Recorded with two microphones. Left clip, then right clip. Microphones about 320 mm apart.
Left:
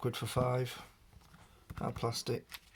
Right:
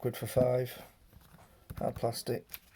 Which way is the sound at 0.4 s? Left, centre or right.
Left.